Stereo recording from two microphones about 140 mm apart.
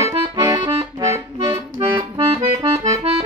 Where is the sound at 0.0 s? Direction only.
30° right (ahead or behind).